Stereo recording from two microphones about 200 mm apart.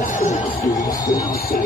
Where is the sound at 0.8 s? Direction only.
20° left (ahead or behind).